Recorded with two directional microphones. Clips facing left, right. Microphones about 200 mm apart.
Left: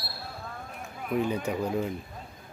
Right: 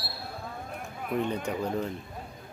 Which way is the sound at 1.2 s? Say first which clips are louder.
Left 2 dB; 5° left (ahead or behind).